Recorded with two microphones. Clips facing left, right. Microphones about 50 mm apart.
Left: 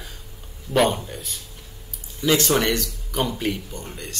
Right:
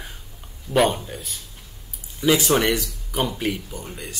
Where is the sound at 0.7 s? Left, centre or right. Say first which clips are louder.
Even; centre.